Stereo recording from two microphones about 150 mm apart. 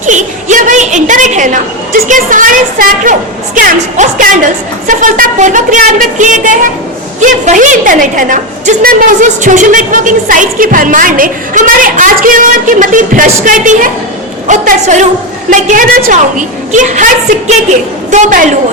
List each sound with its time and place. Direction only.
0.0 s a woman's voice: 55° right (ahead or behind)
18.1 s a woman's voice: 55° right (ahead or behind)